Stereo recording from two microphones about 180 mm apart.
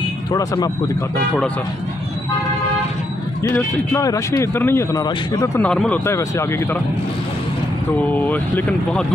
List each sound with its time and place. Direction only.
0.3 s speech: 20° left (ahead or behind)
3.4 s speech: 15° left (ahead or behind)
5.4 s speech: 5° left (ahead or behind)
8.1 s speech: 10° left (ahead or behind)